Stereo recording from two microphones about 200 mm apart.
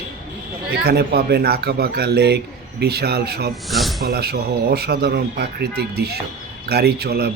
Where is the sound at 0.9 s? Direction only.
55° right (ahead or behind).